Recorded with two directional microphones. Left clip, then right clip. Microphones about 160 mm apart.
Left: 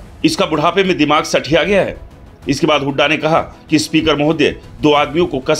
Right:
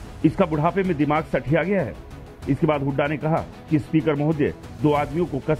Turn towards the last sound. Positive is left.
turn(degrees=-40)  # may be behind; listen again after turning